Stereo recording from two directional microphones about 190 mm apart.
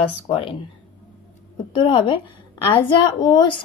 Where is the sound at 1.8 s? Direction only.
30° left (ahead or behind).